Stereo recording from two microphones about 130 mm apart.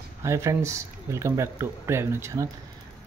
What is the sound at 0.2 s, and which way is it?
Speech, 20° right (ahead or behind).